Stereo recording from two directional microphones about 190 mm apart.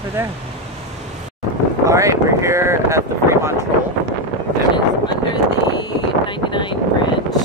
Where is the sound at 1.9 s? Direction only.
15° right (ahead or behind).